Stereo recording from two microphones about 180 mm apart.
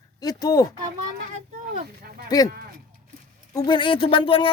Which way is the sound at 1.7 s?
60° right (ahead or behind).